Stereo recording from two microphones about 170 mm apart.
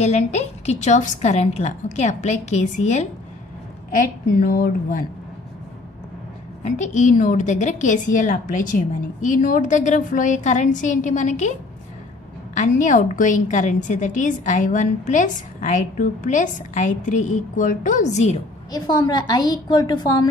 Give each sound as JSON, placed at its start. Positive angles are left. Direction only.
{"t": 0.0, "sound": "a woman's voice", "side_deg": 40}
{"t": 4.4, "sound": "speech", "side_deg": 55}
{"t": 6.6, "sound": "a woman's voice", "side_deg": 45}
{"t": 12.5, "sound": "a woman's voice", "side_deg": 45}
{"t": 18.7, "sound": "a woman's voice", "side_deg": 25}